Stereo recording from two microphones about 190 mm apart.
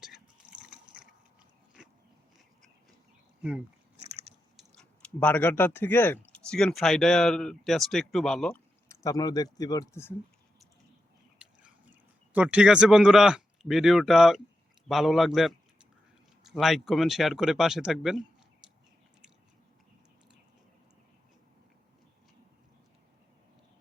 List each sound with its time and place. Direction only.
0.0 s drip: 5° right (ahead or behind)
1.8 s a sound: 5° right (ahead or behind)
4.0 s biting: 35° right (ahead or behind)
4.5 s speech: 5° left (ahead or behind)
8.9 s speech: 20° left (ahead or behind)
11.3 s a sound: 5° right (ahead or behind)
14.8 s a man's voice: centre (ahead or behind)